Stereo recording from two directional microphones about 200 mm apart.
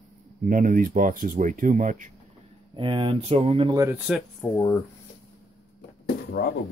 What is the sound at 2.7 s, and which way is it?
Speech, 25° right (ahead or behind).